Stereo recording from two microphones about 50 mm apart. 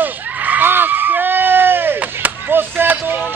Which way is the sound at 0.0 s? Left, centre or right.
Right.